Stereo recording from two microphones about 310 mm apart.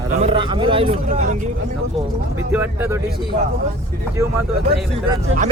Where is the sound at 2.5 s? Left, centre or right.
Centre.